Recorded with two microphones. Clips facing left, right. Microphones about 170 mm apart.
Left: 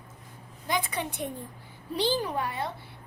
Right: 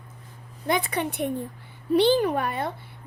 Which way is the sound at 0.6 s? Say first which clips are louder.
Right 5 dB; 60° right (ahead or behind).